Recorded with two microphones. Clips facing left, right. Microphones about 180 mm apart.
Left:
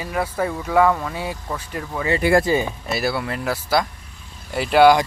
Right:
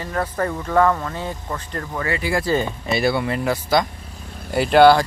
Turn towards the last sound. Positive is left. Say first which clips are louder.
# right 1 dB
turn(degrees=10)  # may be behind; listen again after turning